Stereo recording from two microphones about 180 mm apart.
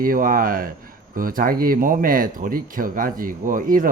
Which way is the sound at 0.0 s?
50° right (ahead or behind).